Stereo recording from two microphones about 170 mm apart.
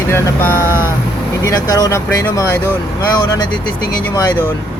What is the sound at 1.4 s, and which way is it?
Speech, 20° left (ahead or behind).